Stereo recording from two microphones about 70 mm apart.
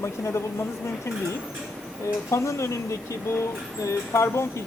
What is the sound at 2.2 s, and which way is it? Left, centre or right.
Speech, left.